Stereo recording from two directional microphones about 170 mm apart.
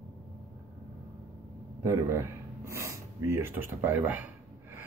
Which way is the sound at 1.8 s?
15° right (ahead or behind).